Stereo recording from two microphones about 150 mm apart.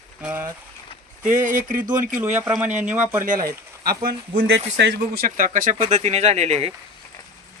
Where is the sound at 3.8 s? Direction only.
90° right; by 6.7 s 45° right (ahead or behind).